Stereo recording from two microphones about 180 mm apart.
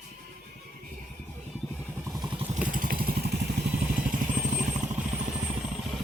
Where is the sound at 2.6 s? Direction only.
50° right (ahead or behind).